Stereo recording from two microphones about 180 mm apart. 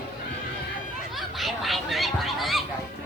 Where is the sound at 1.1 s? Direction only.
Centre (ahead or behind).